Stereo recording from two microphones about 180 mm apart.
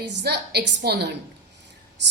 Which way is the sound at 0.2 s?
65° right (ahead or behind).